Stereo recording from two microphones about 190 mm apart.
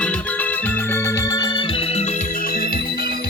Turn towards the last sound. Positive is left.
turn(degrees=55)  # may be behind; listen again after turning